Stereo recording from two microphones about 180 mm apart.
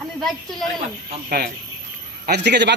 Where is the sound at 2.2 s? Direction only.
65° right (ahead or behind).